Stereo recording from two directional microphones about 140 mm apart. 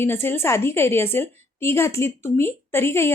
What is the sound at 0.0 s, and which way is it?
A woman's voice, 15° left (ahead or behind).